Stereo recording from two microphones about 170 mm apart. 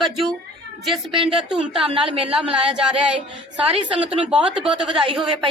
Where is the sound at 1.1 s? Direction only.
30° right (ahead or behind).